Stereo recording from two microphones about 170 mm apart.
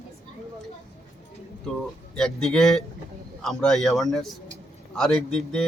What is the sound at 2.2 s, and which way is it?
A man's voice, centre (ahead or behind).